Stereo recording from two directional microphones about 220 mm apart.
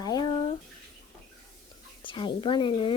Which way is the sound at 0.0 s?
15° left (ahead or behind).